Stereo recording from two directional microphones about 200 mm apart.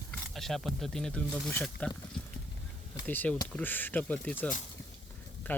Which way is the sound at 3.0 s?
10° left (ahead or behind).